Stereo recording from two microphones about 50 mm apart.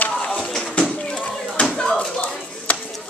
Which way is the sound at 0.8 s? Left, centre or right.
Left.